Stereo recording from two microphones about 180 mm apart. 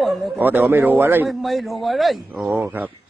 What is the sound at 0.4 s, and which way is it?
Speech, 10° right (ahead or behind).